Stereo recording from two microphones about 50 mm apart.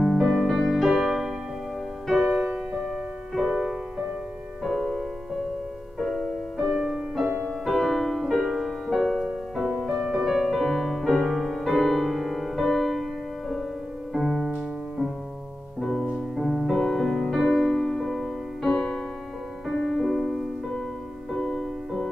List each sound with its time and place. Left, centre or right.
0.0 s music: centre
14.1 s music: centre
18.7 s music: centre
19.7 s music: centre